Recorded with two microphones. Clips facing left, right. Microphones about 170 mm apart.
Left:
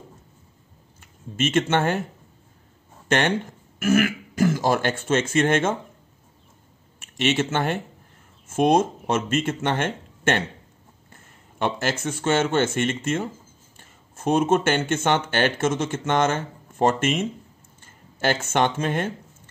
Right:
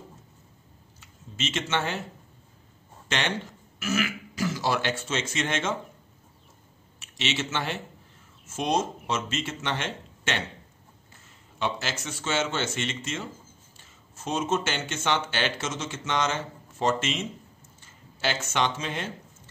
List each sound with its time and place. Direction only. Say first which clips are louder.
1.0 s speech: left 9 dB; 55° left (ahead or behind)
3.1 s speech: left 8 dB; 50° left (ahead or behind)
7.0 s speech: left 8 dB; 50° left (ahead or behind)